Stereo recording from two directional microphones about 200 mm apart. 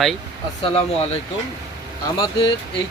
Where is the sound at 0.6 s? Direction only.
30° left (ahead or behind).